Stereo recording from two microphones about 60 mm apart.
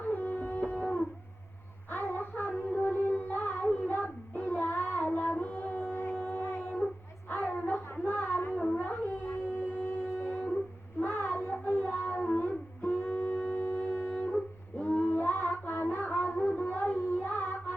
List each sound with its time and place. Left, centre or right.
0.1 s a sound: left
0.8 s music: left
1.9 s child singing: left
5.3 s music: left
6.3 s a sound: left
11.0 s child singing: left
13.5 s music: left
14.1 s music: centre
14.8 s child singing: left